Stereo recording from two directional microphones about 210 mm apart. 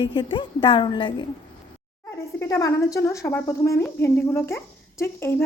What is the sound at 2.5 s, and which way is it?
A woman's voice, 15° left (ahead or behind).